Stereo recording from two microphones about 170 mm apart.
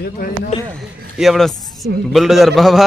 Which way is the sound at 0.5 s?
35° left (ahead or behind).